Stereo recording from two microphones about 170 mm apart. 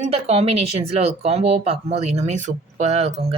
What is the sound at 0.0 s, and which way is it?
Speech, 35° right (ahead or behind).